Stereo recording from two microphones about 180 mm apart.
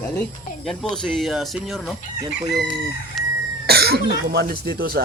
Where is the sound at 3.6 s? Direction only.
60° right (ahead or behind).